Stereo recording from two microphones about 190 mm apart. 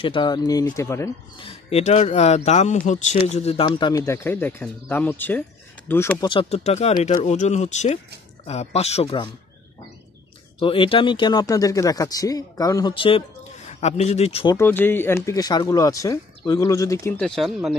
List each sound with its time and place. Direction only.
0.0 s speech: 25° left (ahead or behind)
1.4 s speech: 30° left (ahead or behind); by 6.1 s 10° left (ahead or behind)
6.2 s speech: 30° left (ahead or behind)
10.6 s speech: 25° left (ahead or behind)
14.6 s speech: 10° left (ahead or behind)
17.2 s speech: centre (ahead or behind)